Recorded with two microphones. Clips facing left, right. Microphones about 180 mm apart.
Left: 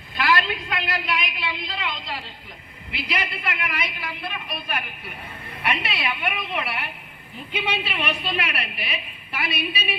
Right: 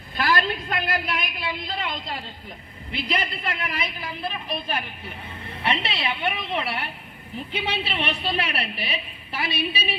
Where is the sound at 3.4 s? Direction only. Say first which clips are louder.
Even; 30° right (ahead or behind).